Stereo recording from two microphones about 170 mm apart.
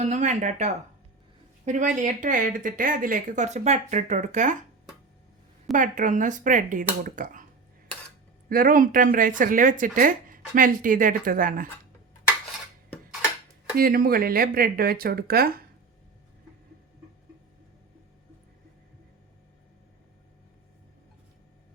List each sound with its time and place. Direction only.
0.0 s speech: 45° right (ahead or behind)
5.7 s speech: 50° right (ahead or behind)
8.4 s speech: 55° right (ahead or behind)
13.7 s speech: 55° right (ahead or behind)